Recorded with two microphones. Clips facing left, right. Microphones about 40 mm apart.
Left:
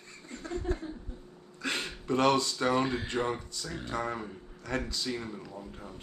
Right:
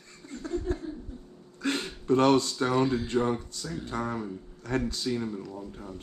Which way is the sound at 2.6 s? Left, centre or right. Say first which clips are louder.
Right 3 dB; left.